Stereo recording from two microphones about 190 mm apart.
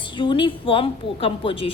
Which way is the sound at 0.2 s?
25° left (ahead or behind).